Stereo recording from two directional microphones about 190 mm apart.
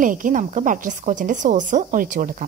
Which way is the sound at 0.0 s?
45° right (ahead or behind).